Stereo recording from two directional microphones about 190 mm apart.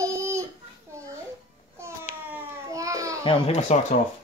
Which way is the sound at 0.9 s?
15° right (ahead or behind).